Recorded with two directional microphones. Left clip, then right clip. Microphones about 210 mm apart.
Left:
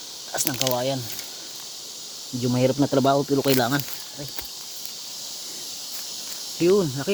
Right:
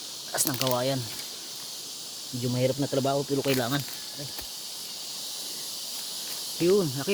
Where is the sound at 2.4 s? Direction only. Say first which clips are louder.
Left 6 dB; 30° left (ahead or behind).